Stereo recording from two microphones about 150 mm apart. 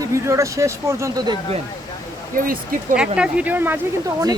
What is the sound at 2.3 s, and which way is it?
Speech, 70° right (ahead or behind).